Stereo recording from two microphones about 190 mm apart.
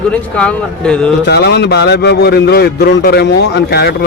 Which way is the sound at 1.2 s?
60° left (ahead or behind).